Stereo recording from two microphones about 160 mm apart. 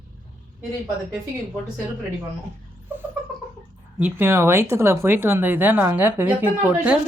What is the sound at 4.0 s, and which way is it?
Speech, 15° right (ahead or behind).